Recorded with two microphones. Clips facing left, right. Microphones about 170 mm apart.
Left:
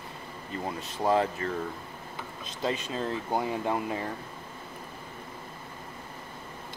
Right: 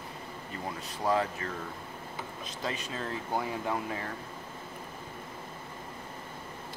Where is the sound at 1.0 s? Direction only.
30° left (ahead or behind).